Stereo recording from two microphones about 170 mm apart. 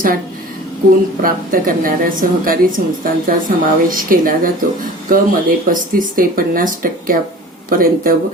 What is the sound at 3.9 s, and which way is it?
Speech, 55° right (ahead or behind).